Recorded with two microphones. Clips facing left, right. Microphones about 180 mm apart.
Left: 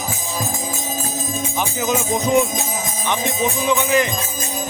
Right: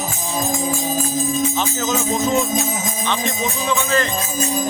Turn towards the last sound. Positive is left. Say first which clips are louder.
# left 2 dB
turn(degrees=15)  # may be behind; listen again after turning